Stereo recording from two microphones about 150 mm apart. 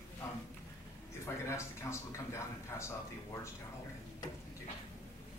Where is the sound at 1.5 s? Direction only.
20° left (ahead or behind).